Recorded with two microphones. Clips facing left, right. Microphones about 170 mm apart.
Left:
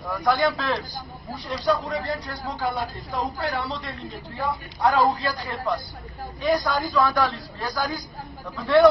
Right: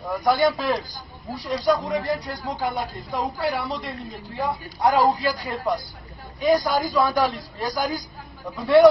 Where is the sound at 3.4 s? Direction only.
10° right (ahead or behind).